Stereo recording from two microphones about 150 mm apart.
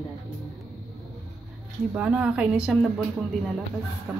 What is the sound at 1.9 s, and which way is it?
Speech, 5° right (ahead or behind).